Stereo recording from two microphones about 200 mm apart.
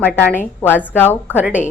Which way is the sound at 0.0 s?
10° left (ahead or behind).